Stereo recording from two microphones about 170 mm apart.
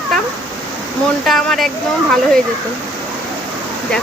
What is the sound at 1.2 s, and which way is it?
Speech, centre (ahead or behind).